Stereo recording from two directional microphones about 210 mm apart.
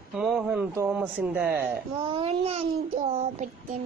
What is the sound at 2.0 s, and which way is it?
A child's voice, 25° right (ahead or behind).